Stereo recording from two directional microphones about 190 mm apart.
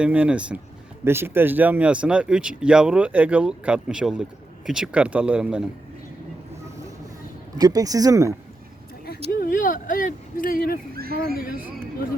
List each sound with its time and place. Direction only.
0.0 s speech: 5° right (ahead or behind)
7.6 s speech: 20° right (ahead or behind)
9.3 s speech: 50° left (ahead or behind)
10.9 s a sound: 55° right (ahead or behind)